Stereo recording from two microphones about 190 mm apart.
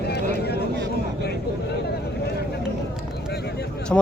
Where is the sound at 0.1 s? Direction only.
60° left (ahead or behind).